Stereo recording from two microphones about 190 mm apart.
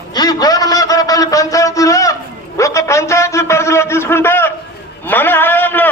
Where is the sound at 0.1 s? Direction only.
20° left (ahead or behind).